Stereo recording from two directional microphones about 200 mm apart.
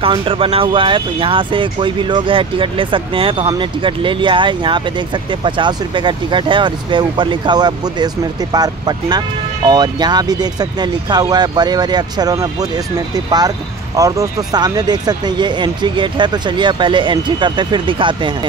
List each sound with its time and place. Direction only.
0.0 s speech: 25° right (ahead or behind)